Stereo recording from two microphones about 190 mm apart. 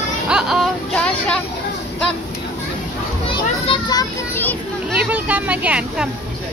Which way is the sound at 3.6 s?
25° left (ahead or behind).